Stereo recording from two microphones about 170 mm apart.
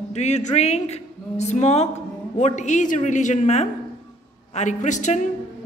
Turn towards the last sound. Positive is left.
turn(degrees=45)  # may be behind; listen again after turning